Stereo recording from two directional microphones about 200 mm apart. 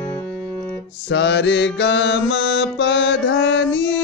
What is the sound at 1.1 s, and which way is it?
Mantra, 60° left (ahead or behind).